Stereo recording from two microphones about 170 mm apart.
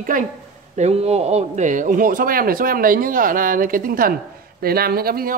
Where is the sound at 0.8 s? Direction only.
40° right (ahead or behind).